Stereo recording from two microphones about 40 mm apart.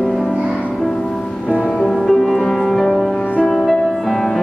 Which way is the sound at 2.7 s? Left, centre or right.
Centre.